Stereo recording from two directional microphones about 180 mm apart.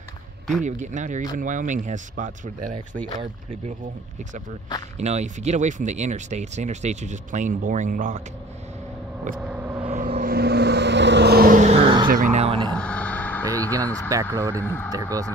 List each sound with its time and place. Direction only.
0.7 s speech: 45° right (ahead or behind)
4.9 s speech: 40° right (ahead or behind)
9.5 s vehicle: 10° right (ahead or behind)
9.9 s vehicle: 50° right (ahead or behind)
11.7 s a sound: 25° right (ahead or behind)
12.1 s speech: 45° right (ahead or behind)
12.7 s a sound: 5° left (ahead or behind)
13.7 s speech: 20° right (ahead or behind)
14.6 s speech: 10° left (ahead or behind)
14.9 s speech: 20° right (ahead or behind)